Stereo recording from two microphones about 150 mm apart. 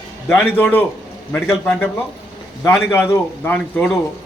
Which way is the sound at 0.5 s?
10° left (ahead or behind).